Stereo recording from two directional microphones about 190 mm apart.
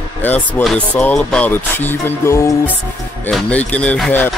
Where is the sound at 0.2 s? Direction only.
10° left (ahead or behind).